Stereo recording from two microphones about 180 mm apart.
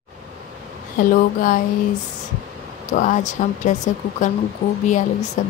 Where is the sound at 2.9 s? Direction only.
45° left (ahead or behind).